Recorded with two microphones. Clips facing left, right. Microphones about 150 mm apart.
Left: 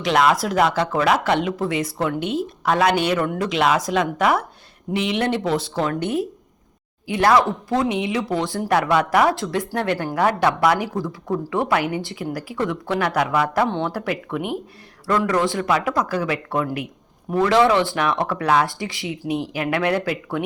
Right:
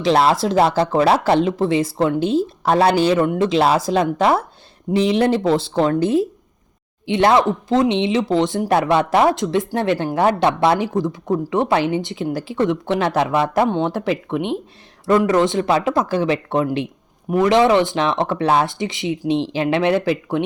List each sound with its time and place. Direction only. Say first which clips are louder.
0.0 s speech: right 3 dB; 30° right (ahead or behind)